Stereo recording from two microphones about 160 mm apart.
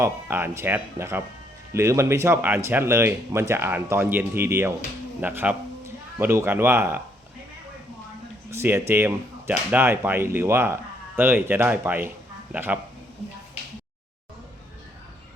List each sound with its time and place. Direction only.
0.0 s speech: 15° right (ahead or behind)
8.4 s speech: 15° right (ahead or behind)